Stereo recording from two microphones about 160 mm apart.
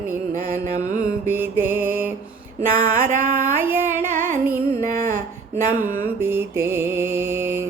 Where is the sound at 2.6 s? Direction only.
55° right (ahead or behind).